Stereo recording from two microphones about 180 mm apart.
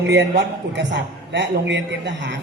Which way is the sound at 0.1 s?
85° right.